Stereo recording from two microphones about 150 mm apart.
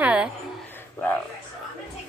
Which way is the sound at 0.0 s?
5° right (ahead or behind).